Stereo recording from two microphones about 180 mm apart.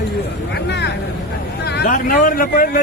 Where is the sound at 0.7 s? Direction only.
70° left (ahead or behind).